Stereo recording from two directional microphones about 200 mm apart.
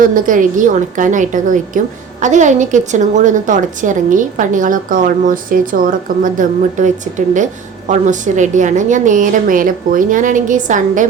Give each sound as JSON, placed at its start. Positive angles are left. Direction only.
{"t": 0.0, "sound": "a woman's voice", "side_deg": -45}